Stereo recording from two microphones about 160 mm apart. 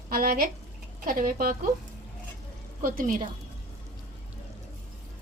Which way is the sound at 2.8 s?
60° right (ahead or behind).